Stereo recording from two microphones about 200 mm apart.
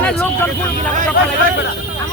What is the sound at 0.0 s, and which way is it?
Vehicle, 5° left (ahead or behind).